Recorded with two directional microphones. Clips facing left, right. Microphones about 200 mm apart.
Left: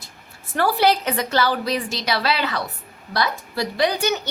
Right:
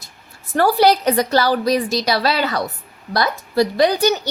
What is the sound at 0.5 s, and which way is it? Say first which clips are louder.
A woman's voice: right 4 dB; 40° right (ahead or behind).